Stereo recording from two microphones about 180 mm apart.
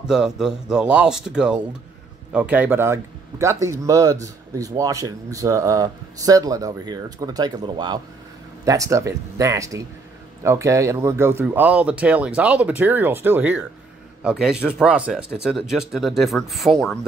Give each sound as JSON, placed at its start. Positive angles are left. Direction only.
{"t": 0.0, "sound": "speech", "side_deg": -5}